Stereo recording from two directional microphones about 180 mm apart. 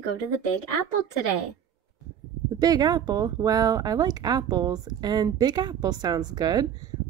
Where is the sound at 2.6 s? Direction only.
20° right (ahead or behind).